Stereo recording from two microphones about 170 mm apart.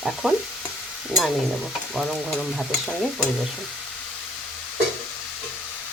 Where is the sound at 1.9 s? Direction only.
Centre (ahead or behind).